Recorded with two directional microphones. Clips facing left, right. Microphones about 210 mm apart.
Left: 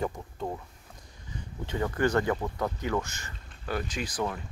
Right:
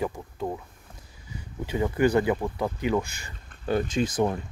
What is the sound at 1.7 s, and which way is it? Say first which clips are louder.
Speech: right 4 dB; 10° right (ahead or behind).